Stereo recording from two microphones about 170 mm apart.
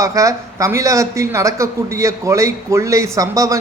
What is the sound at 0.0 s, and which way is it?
A man's voice, 20° right (ahead or behind).